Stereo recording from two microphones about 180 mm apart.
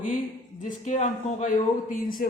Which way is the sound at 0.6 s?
40° left (ahead or behind).